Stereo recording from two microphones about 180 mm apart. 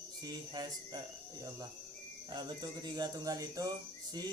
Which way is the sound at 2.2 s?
25° right (ahead or behind).